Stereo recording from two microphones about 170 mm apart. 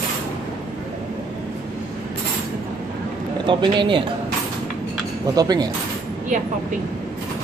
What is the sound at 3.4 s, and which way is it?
Speech, 30° right (ahead or behind).